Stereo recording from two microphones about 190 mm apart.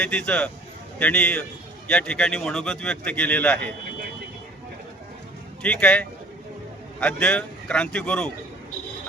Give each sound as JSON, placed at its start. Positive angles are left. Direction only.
{"t": 0.0, "sound": "a man's voice", "side_deg": 5}
{"t": 5.6, "sound": "a man's voice", "side_deg": 5}